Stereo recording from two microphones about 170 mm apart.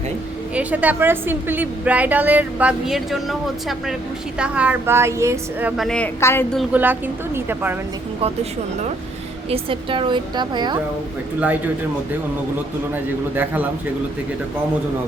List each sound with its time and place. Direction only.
0.5 s a woman's voice: 10° right (ahead or behind)
6.1 s speech: 15° left (ahead or behind)
6.7 s a woman's voice: 10° right (ahead or behind)
9.5 s a woman's voice: 30° right (ahead or behind)
13.3 s a woman's voice: 10° right (ahead or behind)